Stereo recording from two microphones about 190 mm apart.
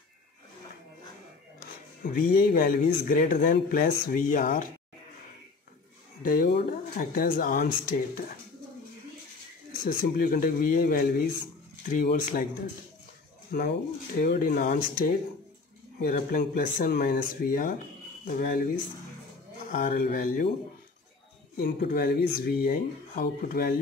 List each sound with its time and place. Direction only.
2.0 s a man's voice: 50° left (ahead or behind)
6.2 s a man's voice: 50° left (ahead or behind)
9.8 s a man's voice: 50° left (ahead or behind)
13.5 s a man's voice: 50° left (ahead or behind)
19.7 s a man's voice: 50° left (ahead or behind)
21.5 s a man's voice: 55° left (ahead or behind)